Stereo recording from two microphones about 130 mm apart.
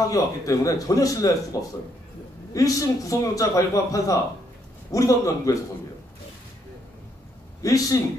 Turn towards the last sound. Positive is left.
turn(degrees=25)  # may be behind; listen again after turning